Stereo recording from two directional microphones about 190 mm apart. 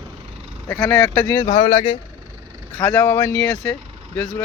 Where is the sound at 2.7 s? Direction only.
15° left (ahead or behind).